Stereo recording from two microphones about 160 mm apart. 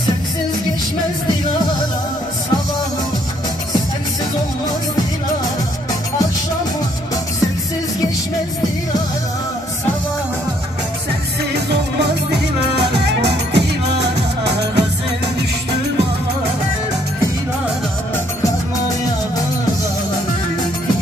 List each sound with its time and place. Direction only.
12.3 s music: 90° right